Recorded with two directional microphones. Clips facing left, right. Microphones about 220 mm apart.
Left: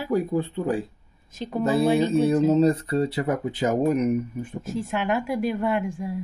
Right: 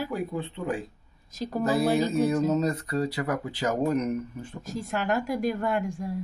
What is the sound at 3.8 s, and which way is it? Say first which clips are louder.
Speech: left 4 dB; 10° left (ahead or behind).